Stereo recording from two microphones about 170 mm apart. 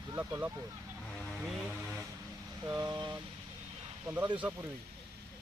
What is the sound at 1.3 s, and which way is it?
Speech, centre (ahead or behind).